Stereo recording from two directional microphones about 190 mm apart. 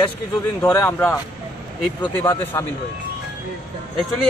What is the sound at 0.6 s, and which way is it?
Speech, 10° left (ahead or behind).